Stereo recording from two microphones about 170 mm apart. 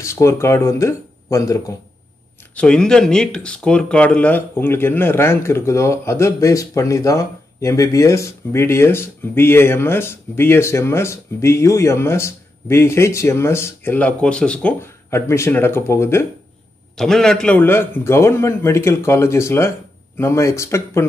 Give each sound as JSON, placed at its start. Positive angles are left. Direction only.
{"t": 0.0, "sound": "speech", "side_deg": 15}
{"t": 2.5, "sound": "speech", "side_deg": 5}
{"t": 16.9, "sound": "speech", "side_deg": 5}